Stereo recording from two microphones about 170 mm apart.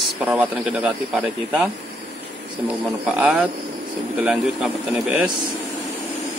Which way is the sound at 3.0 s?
5° right (ahead or behind).